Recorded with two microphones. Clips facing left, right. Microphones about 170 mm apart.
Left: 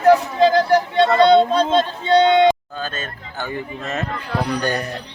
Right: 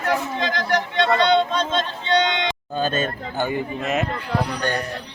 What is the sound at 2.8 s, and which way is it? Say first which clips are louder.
Speech: right 6 dB; 20° right (ahead or behind).